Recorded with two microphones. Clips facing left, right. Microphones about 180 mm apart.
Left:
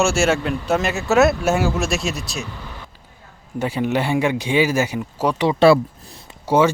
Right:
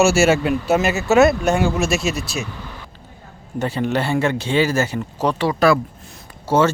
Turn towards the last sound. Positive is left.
turn(degrees=15)  # may be behind; listen again after turning